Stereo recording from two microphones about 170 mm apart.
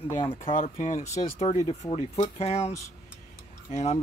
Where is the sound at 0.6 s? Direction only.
40° left (ahead or behind).